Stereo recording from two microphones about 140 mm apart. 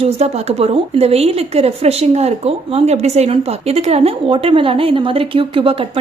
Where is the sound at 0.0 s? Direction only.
50° right (ahead or behind).